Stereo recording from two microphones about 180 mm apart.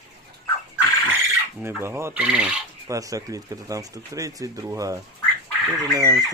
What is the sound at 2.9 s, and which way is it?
Speech, 20° right (ahead or behind).